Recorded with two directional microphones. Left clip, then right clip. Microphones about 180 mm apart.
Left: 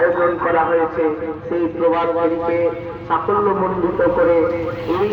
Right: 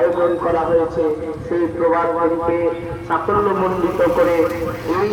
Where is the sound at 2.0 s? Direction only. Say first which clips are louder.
Even; 45° right (ahead or behind).